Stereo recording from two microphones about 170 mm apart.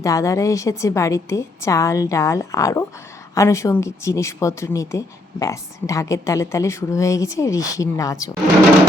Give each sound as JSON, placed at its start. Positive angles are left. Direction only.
{"t": 0.0, "sound": "speech", "side_deg": 20}